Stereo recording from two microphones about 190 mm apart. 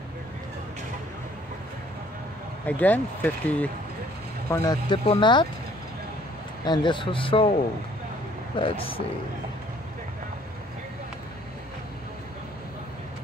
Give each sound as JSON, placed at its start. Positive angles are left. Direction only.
{"t": 2.6, "sound": "speech", "side_deg": 10}
{"t": 6.6, "sound": "speech", "side_deg": 25}
{"t": 8.5, "sound": "speech", "side_deg": 30}